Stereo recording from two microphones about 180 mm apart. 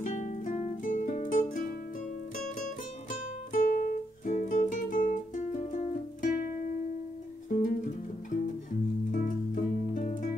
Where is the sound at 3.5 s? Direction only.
50° left (ahead or behind).